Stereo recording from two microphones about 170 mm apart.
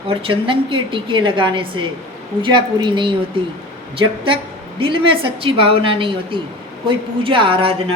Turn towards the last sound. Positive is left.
turn(degrees=-35)  # may be behind; listen again after turning